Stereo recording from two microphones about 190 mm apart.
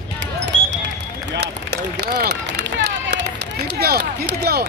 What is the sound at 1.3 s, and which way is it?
Run, 65° right (ahead or behind).